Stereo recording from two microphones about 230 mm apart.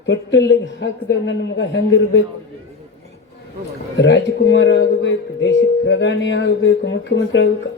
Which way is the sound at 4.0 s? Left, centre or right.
Left.